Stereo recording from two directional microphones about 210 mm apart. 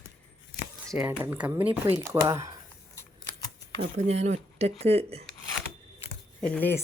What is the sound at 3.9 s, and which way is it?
Speech, 30° right (ahead or behind).